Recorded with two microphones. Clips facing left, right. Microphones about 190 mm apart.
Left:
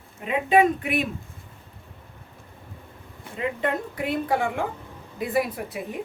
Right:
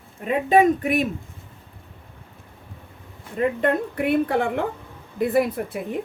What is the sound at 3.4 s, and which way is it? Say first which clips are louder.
A woman's voice: right 5 dB; 55° right (ahead or behind).